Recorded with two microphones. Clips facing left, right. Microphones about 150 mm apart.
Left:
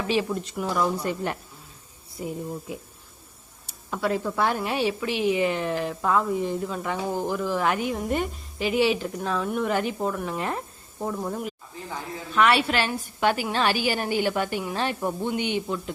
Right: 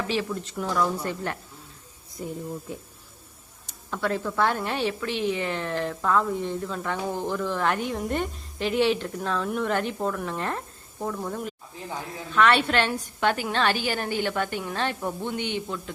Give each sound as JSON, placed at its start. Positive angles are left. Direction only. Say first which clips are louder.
{"t": 0.1, "sound": "a woman's voice", "louder": "left 3 dB", "side_deg": 15}
{"t": 3.8, "sound": "a woman's voice", "louder": "left 2 dB", "side_deg": 10}